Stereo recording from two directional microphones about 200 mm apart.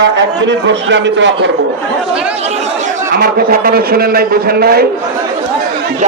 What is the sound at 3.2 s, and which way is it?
A man's voice, 50° right (ahead or behind).